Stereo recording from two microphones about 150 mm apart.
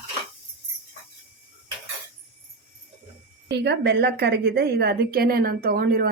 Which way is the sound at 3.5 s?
90° right.